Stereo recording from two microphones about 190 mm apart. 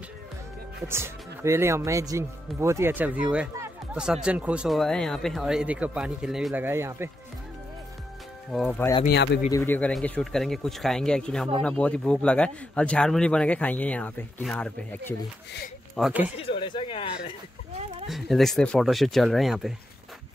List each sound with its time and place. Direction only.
0.8 s a man's voice: 15° right (ahead or behind)
8.5 s a man's voice: centre (ahead or behind)
8.7 s speech: 15° left (ahead or behind)
9.0 s speech: 60° left (ahead or behind)
9.5 s a man's voice: 10° left (ahead or behind)
16.0 s speech: 10° right (ahead or behind)
16.3 s speech: 30° left (ahead or behind)
18.0 s a man's voice: centre (ahead or behind)